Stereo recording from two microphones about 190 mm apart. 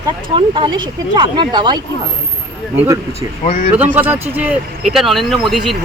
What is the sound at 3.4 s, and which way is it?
Speech, 45° left (ahead or behind).